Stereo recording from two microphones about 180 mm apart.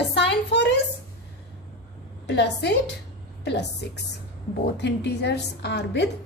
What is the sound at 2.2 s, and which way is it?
A woman's voice, 70° left (ahead or behind).